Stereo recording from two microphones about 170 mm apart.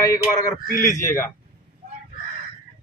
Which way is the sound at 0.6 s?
55° left (ahead or behind).